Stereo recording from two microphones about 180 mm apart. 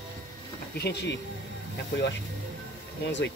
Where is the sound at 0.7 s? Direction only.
70° left (ahead or behind).